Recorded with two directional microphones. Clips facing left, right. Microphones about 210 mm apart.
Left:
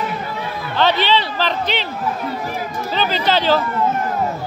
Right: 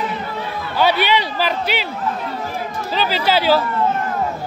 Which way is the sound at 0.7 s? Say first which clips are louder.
Even; 10° right (ahead or behind).